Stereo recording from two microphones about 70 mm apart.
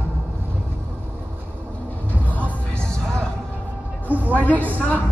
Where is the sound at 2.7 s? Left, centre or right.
Centre.